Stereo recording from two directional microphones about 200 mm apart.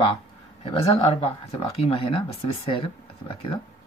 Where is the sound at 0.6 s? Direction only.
30° left (ahead or behind).